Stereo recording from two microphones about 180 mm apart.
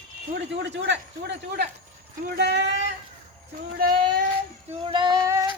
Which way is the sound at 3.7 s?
50° right (ahead or behind).